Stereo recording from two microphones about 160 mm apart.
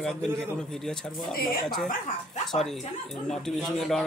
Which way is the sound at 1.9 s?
50° left (ahead or behind).